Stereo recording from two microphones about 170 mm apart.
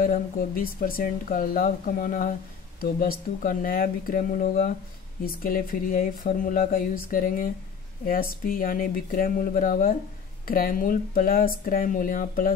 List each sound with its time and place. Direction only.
0.0 s speech: 55° left (ahead or behind)